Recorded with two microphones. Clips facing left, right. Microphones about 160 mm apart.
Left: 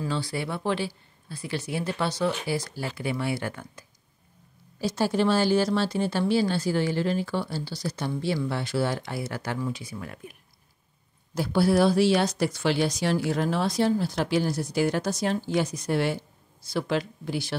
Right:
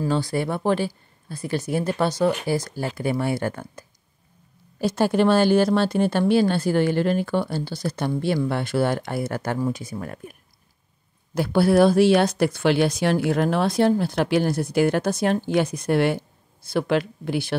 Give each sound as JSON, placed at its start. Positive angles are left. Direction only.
{"t": 0.0, "sound": "speech", "side_deg": -45}
{"t": 4.7, "sound": "speech", "side_deg": -55}
{"t": 11.3, "sound": "speech", "side_deg": -60}